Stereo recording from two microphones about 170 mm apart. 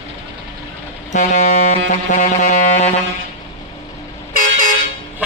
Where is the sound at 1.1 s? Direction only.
45° left (ahead or behind).